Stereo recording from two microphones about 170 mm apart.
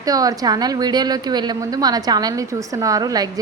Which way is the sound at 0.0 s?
20° right (ahead or behind).